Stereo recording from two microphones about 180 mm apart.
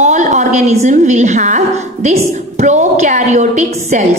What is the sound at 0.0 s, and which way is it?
A woman's voice, 40° right (ahead or behind).